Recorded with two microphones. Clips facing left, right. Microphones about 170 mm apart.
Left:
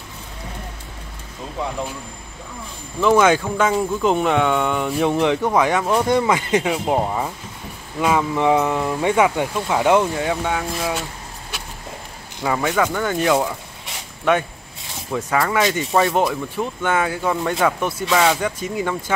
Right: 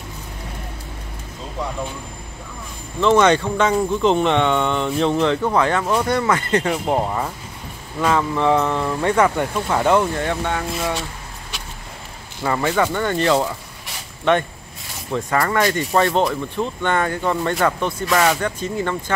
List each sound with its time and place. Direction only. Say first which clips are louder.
3.0 s speech: even; 5° left (ahead or behind)
12.5 s speech: right 1 dB; centre (ahead or behind)
15.0 s speech: even; centre (ahead or behind)